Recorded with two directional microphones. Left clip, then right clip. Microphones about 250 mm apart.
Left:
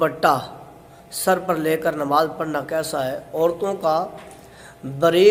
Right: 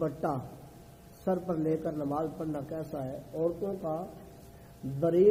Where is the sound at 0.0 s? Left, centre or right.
Left.